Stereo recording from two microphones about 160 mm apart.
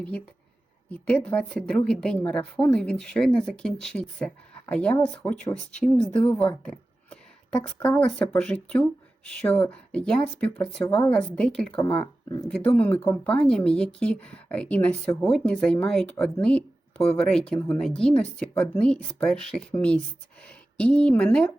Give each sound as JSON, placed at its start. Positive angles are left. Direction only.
{"t": 0.9, "sound": "a woman's voice", "side_deg": 10}